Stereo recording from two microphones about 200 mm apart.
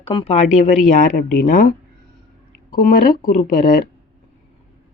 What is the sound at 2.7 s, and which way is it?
Speech, 45° left (ahead or behind).